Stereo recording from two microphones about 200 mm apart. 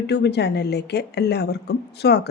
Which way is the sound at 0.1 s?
55° left (ahead or behind).